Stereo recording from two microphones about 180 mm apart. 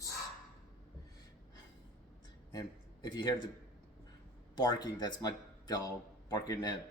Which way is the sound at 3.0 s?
25° left (ahead or behind).